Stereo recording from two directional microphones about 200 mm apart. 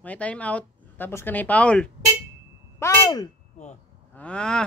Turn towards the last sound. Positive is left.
turn(degrees=5)  # may be behind; listen again after turning